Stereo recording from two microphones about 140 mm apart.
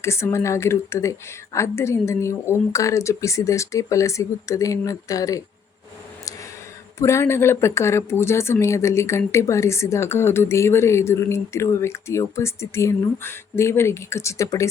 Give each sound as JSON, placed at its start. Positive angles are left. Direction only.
{"t": 0.0, "sound": "speech", "side_deg": 20}
{"t": 7.0, "sound": "speech", "side_deg": 20}